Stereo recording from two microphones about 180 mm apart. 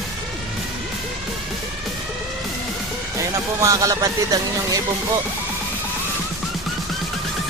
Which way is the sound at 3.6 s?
20° right (ahead or behind).